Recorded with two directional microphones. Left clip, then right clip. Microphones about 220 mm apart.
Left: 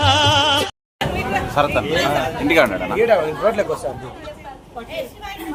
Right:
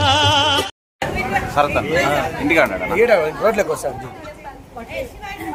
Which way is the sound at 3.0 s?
35° right (ahead or behind).